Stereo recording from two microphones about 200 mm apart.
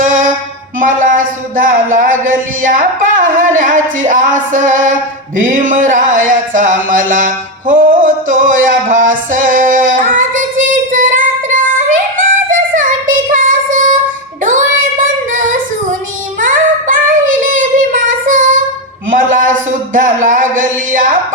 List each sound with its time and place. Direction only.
0.0 s a sound: 40° right (ahead or behind)
5.6 s music: 40° right (ahead or behind)
9.3 s child singing: 40° right (ahead or behind)
10.9 s female singing: 40° right (ahead or behind)
13.3 s child singing: 40° right (ahead or behind)
19.1 s a sound: 40° right (ahead or behind)